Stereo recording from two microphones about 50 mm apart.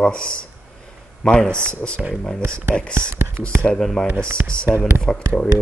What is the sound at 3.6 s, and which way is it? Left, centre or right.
Speech, centre.